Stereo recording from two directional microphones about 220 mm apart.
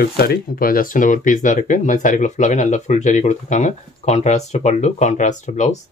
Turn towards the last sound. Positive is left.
turn(degrees=35)  # may be behind; listen again after turning